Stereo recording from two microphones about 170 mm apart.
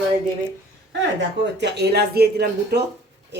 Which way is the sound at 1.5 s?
85° right.